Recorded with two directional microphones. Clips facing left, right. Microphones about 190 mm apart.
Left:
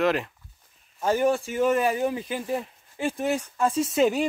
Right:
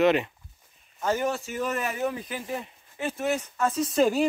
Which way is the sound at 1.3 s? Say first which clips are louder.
Left 7 dB; 10° left (ahead or behind).